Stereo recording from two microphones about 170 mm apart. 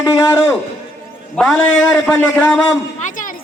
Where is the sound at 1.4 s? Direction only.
5° left (ahead or behind).